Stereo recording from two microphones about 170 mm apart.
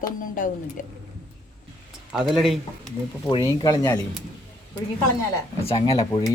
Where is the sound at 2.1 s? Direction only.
Centre (ahead or behind).